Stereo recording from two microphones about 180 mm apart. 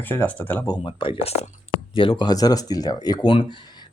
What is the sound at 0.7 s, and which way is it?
Speech, 25° left (ahead or behind).